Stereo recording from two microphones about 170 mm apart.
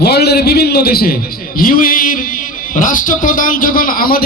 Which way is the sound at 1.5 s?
55° left (ahead or behind).